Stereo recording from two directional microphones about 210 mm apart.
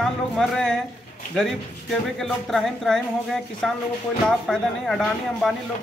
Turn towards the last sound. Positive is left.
turn(degrees=0)  # may be behind; listen again after turning